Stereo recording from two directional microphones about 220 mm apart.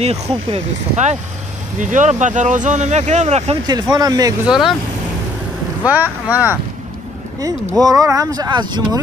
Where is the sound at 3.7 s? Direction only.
20° right (ahead or behind).